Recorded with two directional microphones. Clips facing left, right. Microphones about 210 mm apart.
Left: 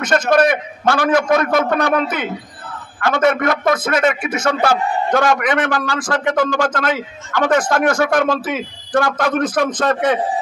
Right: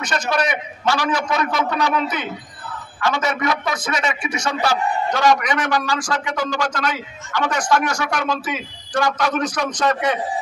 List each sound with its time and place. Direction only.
0.0 s a man's voice: 55° left (ahead or behind)